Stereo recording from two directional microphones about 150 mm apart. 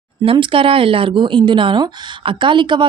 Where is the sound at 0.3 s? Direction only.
35° right (ahead or behind).